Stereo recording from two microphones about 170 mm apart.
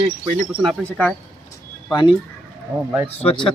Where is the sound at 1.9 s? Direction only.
25° left (ahead or behind).